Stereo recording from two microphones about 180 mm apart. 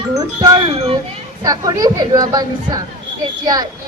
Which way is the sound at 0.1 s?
20° right (ahead or behind).